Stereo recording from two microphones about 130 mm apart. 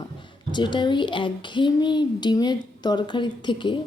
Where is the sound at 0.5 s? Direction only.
35° left (ahead or behind).